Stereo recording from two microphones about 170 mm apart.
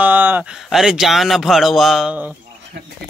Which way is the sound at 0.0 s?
10° right (ahead or behind).